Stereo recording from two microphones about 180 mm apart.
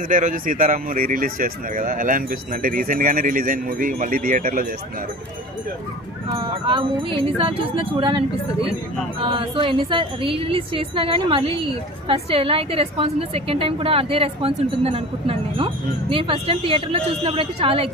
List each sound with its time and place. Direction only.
0.1 s speech: 45° right (ahead or behind)
6.2 s speech: 25° right (ahead or behind)
9.2 s a woman's voice: 30° right (ahead or behind)